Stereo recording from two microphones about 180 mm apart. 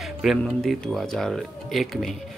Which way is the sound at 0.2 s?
Centre (ahead or behind).